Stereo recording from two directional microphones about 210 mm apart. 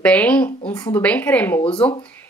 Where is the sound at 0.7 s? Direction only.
15° left (ahead or behind).